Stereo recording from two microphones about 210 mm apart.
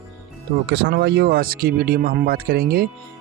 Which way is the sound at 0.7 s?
50° right (ahead or behind).